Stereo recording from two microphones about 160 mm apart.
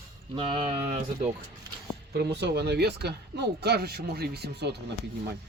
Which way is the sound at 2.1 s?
90° right.